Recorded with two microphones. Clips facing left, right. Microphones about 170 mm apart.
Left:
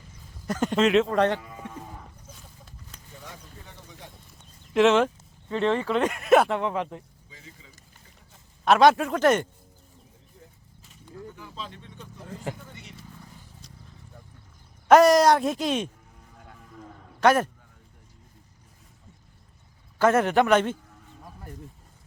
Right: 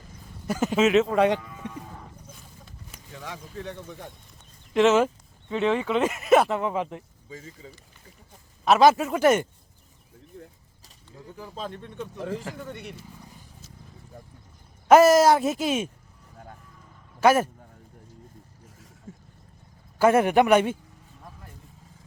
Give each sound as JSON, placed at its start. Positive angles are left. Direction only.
{"t": 0.4, "sound": "speech", "side_deg": -5}
{"t": 3.2, "sound": "speech", "side_deg": -90}
{"t": 4.7, "sound": "speech", "side_deg": 0}
{"t": 7.3, "sound": "speech", "side_deg": -45}
{"t": 8.6, "sound": "speech", "side_deg": 0}
{"t": 10.3, "sound": "vehicle", "side_deg": -60}
{"t": 11.3, "sound": "speech", "side_deg": -40}
{"t": 12.5, "sound": "speech", "side_deg": -65}
{"t": 14.8, "sound": "speech", "side_deg": -5}
{"t": 17.2, "sound": "speech", "side_deg": -5}
{"t": 19.1, "sound": "a sound", "side_deg": -90}
{"t": 20.0, "sound": "a man's voice", "side_deg": -10}